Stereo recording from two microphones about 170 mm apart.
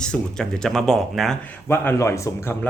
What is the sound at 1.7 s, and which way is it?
A man's voice, 15° left (ahead or behind).